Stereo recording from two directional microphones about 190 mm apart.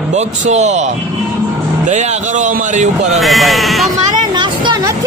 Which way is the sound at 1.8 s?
40° right (ahead or behind).